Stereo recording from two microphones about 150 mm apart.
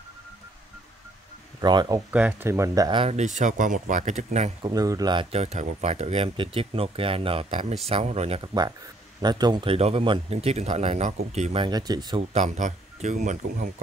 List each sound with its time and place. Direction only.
1.6 s speech: 30° right (ahead or behind)
2.0 s speech: 10° right (ahead or behind); by 3.1 s 30° right (ahead or behind)
3.1 s speech: 50° right (ahead or behind)
4.6 s speech: 25° right (ahead or behind)
5.4 s speech: 50° right (ahead or behind)
8.4 s speech: 30° right (ahead or behind)
9.8 s speech: 40° right (ahead or behind)
11.6 s speech: 25° right (ahead or behind)
12.2 s speech: 50° right (ahead or behind)